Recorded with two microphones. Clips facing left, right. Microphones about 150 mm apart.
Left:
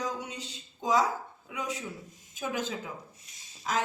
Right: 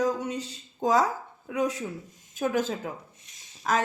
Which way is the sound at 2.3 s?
50° right (ahead or behind).